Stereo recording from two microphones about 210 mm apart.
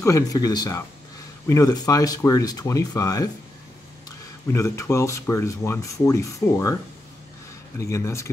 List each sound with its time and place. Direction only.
0.0 s speech: 15° left (ahead or behind)
4.5 s speech: 15° left (ahead or behind)
7.8 s speech: 15° left (ahead or behind)